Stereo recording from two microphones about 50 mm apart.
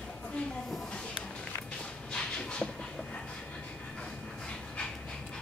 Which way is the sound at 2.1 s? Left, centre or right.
Centre.